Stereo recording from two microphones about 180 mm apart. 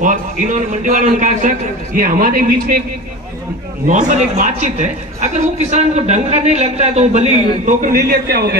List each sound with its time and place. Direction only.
0.0 s a man's voice: 45° right (ahead or behind)
3.8 s a woman's voice: 45° right (ahead or behind)
7.6 s a man's voice: 50° right (ahead or behind)